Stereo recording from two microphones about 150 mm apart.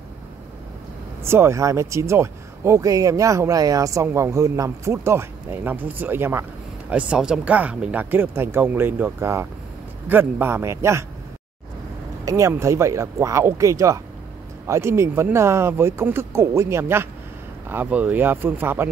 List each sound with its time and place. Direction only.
1.2 s speech: 15° right (ahead or behind)
12.3 s speech: 20° right (ahead or behind)